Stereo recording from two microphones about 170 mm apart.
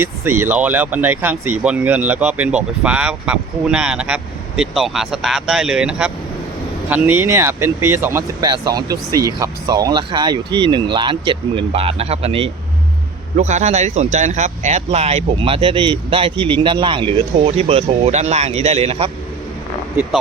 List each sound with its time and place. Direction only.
0.0 s speech: 15° right (ahead or behind); by 19.1 s 35° right (ahead or behind)